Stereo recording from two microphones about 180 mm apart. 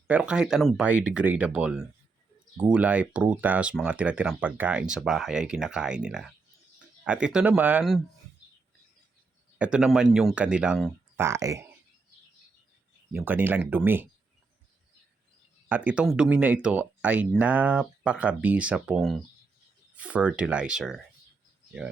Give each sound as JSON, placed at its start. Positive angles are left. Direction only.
{"t": 0.1, "sound": "speech", "side_deg": -5}
{"t": 9.7, "sound": "speech", "side_deg": -5}
{"t": 11.2, "sound": "speech", "side_deg": -15}
{"t": 13.1, "sound": "speech", "side_deg": -10}
{"t": 15.7, "sound": "speech", "side_deg": -10}